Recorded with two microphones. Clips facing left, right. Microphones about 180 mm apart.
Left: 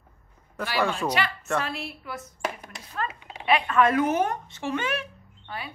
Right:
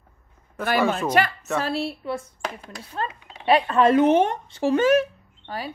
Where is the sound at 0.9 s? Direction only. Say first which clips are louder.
Right 5 dB; 45° right (ahead or behind).